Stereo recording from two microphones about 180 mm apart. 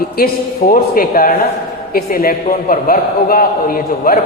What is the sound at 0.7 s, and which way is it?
A man's voice, 55° left (ahead or behind).